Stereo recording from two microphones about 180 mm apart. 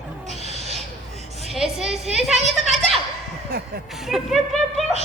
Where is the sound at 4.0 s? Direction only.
Centre (ahead or behind).